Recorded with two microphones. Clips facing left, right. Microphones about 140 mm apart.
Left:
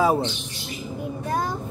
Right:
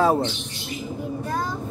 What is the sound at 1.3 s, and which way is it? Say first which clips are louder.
Child singing: left 3 dB; 25° left (ahead or behind).